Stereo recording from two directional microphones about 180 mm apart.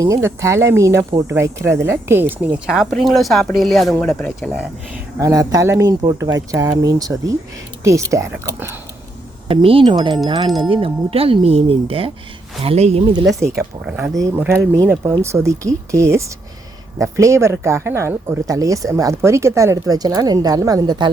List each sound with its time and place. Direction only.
0.0 s speech: 15° right (ahead or behind); by 4.6 s 5° left (ahead or behind)
5.2 s speech: 20° right (ahead or behind)
9.5 s speech: 30° right (ahead or behind)
13.6 s speech: 10° right (ahead or behind)